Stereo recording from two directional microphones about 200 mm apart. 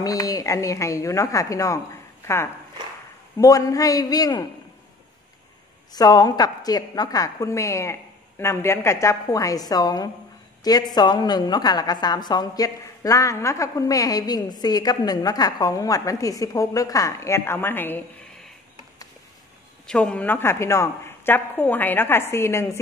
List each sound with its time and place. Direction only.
0.0 s a woman's voice: 20° left (ahead or behind)
5.9 s a woman's voice: 20° left (ahead or behind)
19.9 s a woman's voice: 5° left (ahead or behind)